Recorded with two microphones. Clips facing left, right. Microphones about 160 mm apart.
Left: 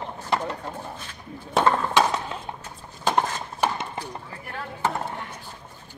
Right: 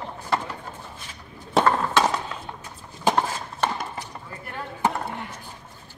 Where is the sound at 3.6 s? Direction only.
10° left (ahead or behind).